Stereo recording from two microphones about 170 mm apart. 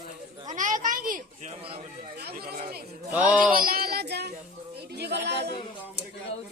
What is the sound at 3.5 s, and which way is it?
A child's voice, 60° right (ahead or behind).